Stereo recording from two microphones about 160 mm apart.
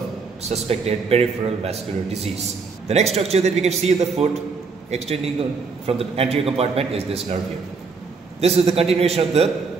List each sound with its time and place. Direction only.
0.4 s a man's voice: 40° right (ahead or behind)
2.9 s a man's voice: 40° right (ahead or behind)
8.4 s a man's voice: 40° right (ahead or behind)